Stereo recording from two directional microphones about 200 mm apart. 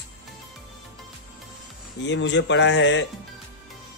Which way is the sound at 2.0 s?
60° left (ahead or behind).